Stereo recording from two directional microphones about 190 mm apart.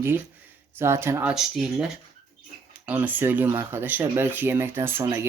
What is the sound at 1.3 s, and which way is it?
Speech, centre (ahead or behind).